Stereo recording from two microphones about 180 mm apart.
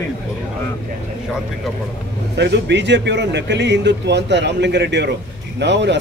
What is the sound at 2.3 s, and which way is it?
Speech, 70° right (ahead or behind).